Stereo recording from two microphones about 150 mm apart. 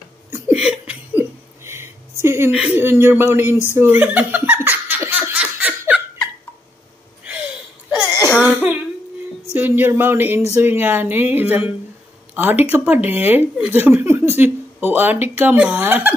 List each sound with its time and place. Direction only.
0.3 s a sound: 5° right (ahead or behind)
2.2 s speech: 15° right (ahead or behind)
3.7 s laughter: 15° right (ahead or behind)
8.2 s laughter: 5° right (ahead or behind)
9.5 s speech: 15° right (ahead or behind)